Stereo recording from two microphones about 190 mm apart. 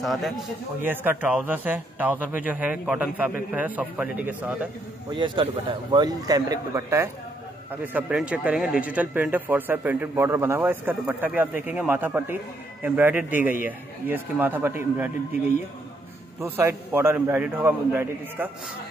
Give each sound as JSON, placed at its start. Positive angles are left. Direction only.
{"t": 0.0, "sound": "speech", "side_deg": 0}
{"t": 5.1, "sound": "a man's voice", "side_deg": -25}
{"t": 16.3, "sound": "speech", "side_deg": -15}